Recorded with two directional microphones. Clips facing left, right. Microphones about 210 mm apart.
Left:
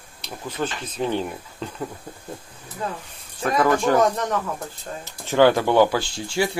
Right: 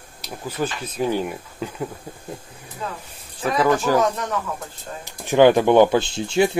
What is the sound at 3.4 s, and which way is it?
Speech, 5° right (ahead or behind).